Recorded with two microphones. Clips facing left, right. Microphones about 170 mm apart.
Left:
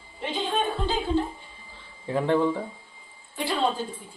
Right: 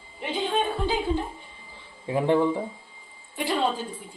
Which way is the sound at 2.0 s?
15° right (ahead or behind).